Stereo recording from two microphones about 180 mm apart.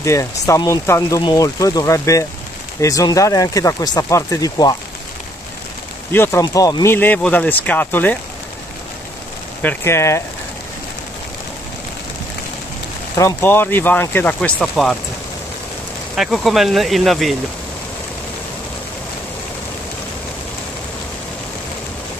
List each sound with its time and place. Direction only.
0.0 s speech: 15° left (ahead or behind)
6.1 s speech: 10° left (ahead or behind)
9.6 s speech: 10° left (ahead or behind)
13.1 s speech: 15° left (ahead or behind)
16.2 s speech: centre (ahead or behind)